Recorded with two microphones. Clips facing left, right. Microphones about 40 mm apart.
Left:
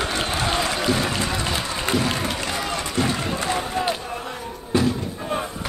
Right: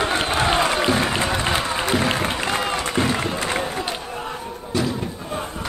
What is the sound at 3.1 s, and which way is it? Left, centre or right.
Run, right.